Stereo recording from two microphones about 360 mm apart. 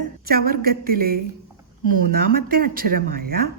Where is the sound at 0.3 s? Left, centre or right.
Right.